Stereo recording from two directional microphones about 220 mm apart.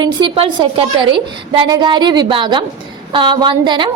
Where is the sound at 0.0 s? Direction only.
20° right (ahead or behind).